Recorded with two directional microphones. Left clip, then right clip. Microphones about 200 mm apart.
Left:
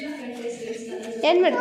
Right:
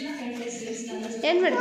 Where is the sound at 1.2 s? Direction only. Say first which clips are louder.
Left 4 dB; 15° left (ahead or behind).